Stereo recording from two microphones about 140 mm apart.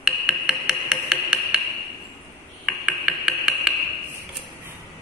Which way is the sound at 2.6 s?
5° right (ahead or behind).